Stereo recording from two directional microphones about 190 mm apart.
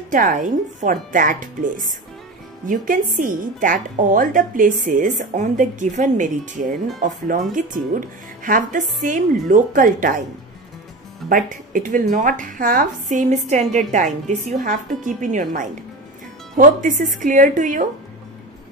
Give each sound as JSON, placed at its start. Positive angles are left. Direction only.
{"t": 0.1, "sound": "a woman's voice", "side_deg": -45}
{"t": 11.2, "sound": "a woman's voice", "side_deg": -45}